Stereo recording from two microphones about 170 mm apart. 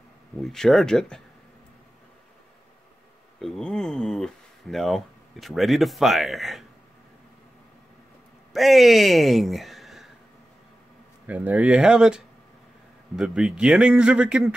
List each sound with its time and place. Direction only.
0.4 s a man's voice: centre (ahead or behind)
3.3 s speech: centre (ahead or behind)
8.5 s speech: centre (ahead or behind)
11.2 s a man's voice: 10° right (ahead or behind)